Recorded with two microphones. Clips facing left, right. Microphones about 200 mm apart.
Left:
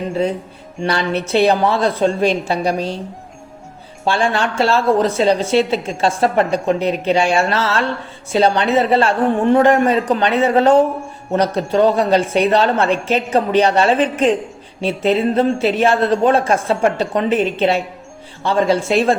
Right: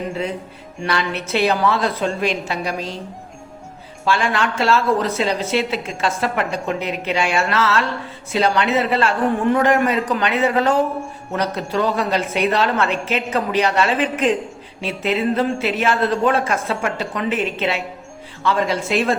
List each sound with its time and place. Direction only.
0.8 s a woman's voice: 30° left (ahead or behind)
4.0 s a woman's voice: 30° left (ahead or behind)